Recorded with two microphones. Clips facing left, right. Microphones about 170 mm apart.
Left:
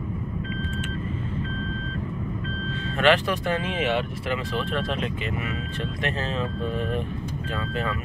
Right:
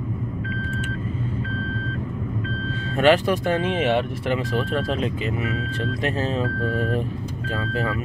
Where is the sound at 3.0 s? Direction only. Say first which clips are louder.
Right 3 dB; 40° right (ahead or behind).